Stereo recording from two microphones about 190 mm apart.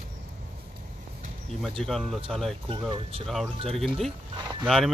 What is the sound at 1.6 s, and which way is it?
Speech, centre (ahead or behind).